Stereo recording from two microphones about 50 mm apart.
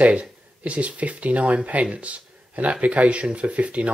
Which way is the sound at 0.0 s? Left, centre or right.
Right.